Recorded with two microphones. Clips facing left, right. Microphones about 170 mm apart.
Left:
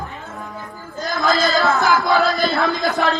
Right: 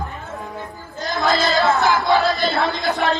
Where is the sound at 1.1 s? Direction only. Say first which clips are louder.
Even; 20° right (ahead or behind).